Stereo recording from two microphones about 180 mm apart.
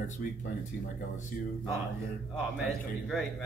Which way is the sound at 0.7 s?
70° left (ahead or behind).